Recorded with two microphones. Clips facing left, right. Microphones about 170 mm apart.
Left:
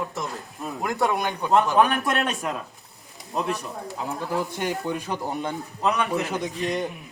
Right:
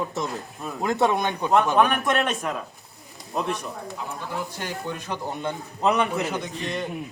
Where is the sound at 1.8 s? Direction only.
5° left (ahead or behind).